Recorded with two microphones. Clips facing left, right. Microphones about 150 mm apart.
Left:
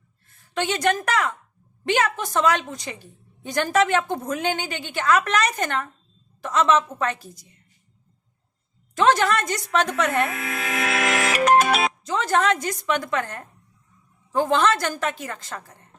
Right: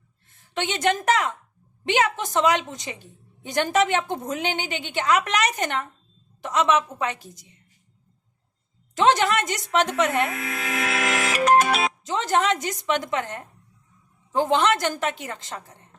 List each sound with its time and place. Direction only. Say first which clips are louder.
0.3 s a woman's voice: left 3 dB; 20° right (ahead or behind)
9.0 s a woman's voice: even; 20° right (ahead or behind)
10.5 s music: left 2 dB; 70° left (ahead or behind)
12.0 s a woman's voice: even; 20° right (ahead or behind)